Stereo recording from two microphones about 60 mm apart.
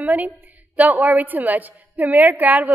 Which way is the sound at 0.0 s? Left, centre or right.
Right.